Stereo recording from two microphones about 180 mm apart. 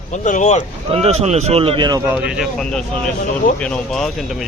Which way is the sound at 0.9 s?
35° right (ahead or behind).